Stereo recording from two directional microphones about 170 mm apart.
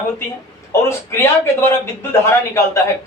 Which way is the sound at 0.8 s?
15° left (ahead or behind).